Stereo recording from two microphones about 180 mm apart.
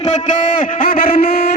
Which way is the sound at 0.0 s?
45° left (ahead or behind).